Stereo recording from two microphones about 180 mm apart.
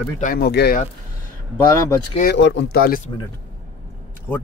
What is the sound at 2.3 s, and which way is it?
Speech, 75° left (ahead or behind).